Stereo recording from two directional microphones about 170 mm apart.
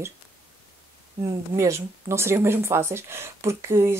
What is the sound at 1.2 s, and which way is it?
Speech, 20° right (ahead or behind).